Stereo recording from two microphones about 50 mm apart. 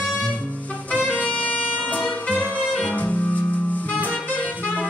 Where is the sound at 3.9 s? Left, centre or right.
Left.